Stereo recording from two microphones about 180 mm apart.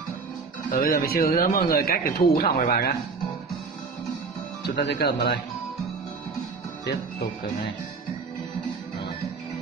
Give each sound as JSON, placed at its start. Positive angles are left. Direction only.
{"t": 0.7, "sound": "a man's voice", "side_deg": 55}
{"t": 4.6, "sound": "speech", "side_deg": 65}